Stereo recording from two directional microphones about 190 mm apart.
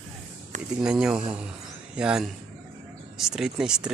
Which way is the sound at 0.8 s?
5° right (ahead or behind).